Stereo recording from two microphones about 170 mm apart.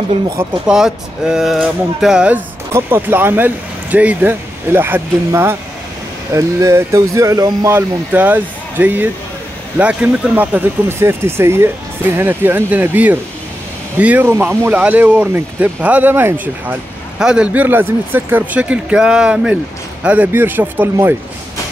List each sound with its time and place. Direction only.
0.4 s speech: 5° right (ahead or behind)